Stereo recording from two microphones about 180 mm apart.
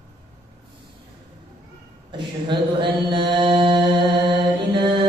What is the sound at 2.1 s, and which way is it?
Mantra, 25° right (ahead or behind).